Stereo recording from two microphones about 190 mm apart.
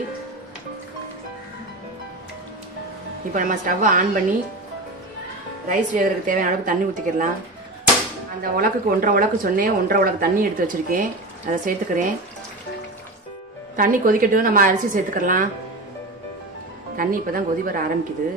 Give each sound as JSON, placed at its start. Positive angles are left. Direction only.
{"t": 3.3, "sound": "a woman's voice", "side_deg": -45}
{"t": 5.7, "sound": "a woman's voice", "side_deg": -45}
{"t": 8.4, "sound": "a woman's voice", "side_deg": -45}
{"t": 13.7, "sound": "a woman's voice", "side_deg": -45}
{"t": 16.9, "sound": "a woman's voice", "side_deg": -50}